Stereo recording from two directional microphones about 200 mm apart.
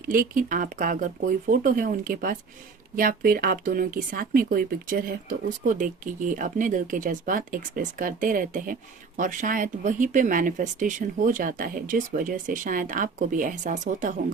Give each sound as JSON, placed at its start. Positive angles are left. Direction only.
{"t": 0.1, "sound": "speech", "side_deg": -45}